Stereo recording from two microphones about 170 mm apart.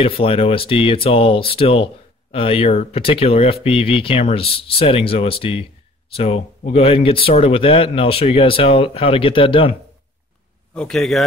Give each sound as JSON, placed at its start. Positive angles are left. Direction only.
{"t": 0.0, "sound": "speech", "side_deg": 35}
{"t": 10.7, "sound": "a man's voice", "side_deg": 5}